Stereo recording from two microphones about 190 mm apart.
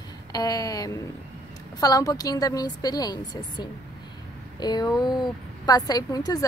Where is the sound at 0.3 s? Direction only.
20° left (ahead or behind).